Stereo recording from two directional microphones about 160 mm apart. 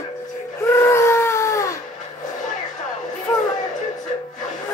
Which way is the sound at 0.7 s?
15° left (ahead or behind).